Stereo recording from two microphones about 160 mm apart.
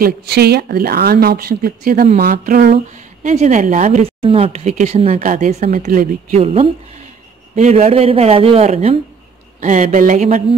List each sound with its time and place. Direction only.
0.0 s speech: 85° right
3.3 s speech: 50° right (ahead or behind)
5.2 s speech: 55° right (ahead or behind)